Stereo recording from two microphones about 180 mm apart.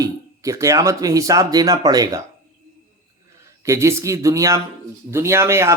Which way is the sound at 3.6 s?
15° right (ahead or behind).